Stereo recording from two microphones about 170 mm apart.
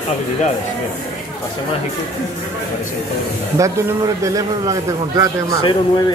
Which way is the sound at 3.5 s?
20° right (ahead or behind).